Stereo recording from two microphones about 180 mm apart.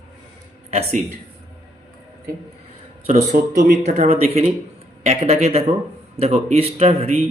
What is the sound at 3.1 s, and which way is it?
Speech, 40° right (ahead or behind).